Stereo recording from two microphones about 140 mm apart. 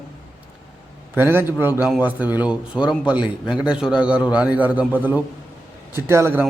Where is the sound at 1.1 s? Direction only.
15° right (ahead or behind).